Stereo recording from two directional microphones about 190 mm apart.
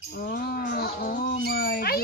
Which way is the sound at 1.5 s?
55° left (ahead or behind).